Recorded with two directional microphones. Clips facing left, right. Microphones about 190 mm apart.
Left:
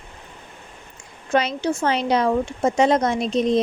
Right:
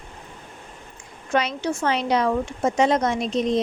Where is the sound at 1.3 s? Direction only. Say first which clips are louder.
Left 2 dB; 30° left (ahead or behind).